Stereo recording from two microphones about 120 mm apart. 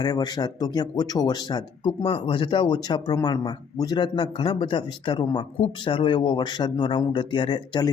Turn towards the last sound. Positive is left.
turn(degrees=40)  # may be behind; listen again after turning